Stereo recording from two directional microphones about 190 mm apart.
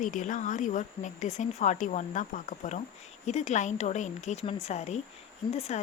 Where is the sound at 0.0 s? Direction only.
45° left (ahead or behind).